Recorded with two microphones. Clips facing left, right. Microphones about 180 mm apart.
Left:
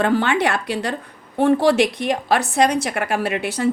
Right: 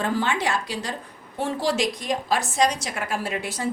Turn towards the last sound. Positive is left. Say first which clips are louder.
# left 7 dB
turn(degrees=70)  # may be behind; listen again after turning